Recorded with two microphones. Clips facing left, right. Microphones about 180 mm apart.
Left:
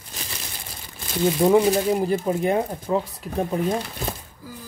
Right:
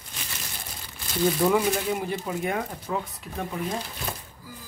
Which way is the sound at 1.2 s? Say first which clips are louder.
Left 5 dB; 25° left (ahead or behind).